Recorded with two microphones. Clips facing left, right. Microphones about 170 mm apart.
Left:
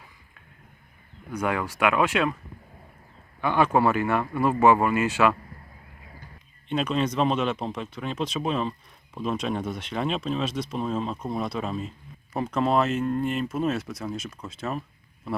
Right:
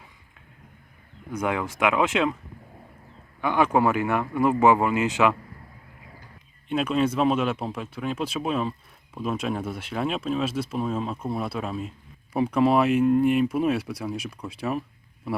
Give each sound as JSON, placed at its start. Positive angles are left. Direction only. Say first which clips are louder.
{"t": 1.3, "sound": "speech", "louder": "even", "side_deg": -20}
{"t": 3.4, "sound": "speech", "louder": "even", "side_deg": -15}
{"t": 6.7, "sound": "speech", "louder": "right 2 dB", "side_deg": -5}